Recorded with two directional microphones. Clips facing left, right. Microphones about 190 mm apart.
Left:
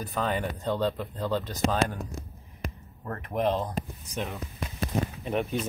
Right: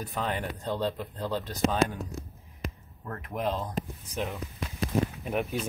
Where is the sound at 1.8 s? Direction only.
25° left (ahead or behind).